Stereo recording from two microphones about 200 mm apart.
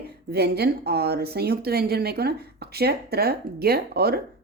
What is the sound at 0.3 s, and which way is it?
Speech, 55° right (ahead or behind).